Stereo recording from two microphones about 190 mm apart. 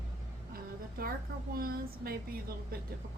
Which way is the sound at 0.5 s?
50° right (ahead or behind).